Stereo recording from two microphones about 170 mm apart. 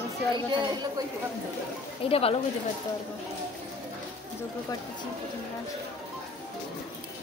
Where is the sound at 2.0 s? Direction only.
35° left (ahead or behind).